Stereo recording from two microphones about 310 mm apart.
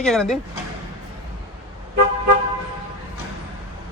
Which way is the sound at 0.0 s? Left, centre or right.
Centre.